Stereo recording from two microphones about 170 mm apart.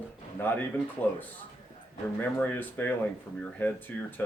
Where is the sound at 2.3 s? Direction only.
10° left (ahead or behind).